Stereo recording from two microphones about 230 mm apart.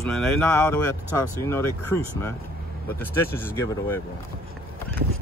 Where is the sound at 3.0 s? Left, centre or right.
Centre.